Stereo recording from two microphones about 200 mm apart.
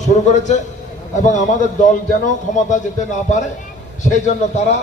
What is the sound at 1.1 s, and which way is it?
A man's voice, 40° left (ahead or behind).